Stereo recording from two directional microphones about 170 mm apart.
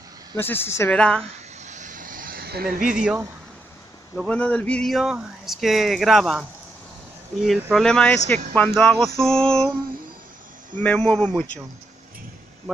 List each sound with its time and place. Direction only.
0.4 s a man's voice: 15° left (ahead or behind)
1.6 s vehicle: 45° right (ahead or behind)
3.0 s speech: 5° right (ahead or behind)
7.7 s a man's voice: 5° left (ahead or behind)
10.8 s a man's voice: 10° left (ahead or behind)
12.7 s speech: 5° left (ahead or behind)